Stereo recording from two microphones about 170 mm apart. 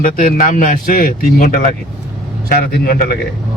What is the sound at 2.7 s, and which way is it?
Speech, 65° left (ahead or behind).